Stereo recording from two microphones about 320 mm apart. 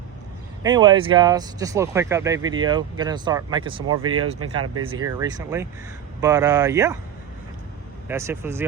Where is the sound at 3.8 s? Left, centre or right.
Right.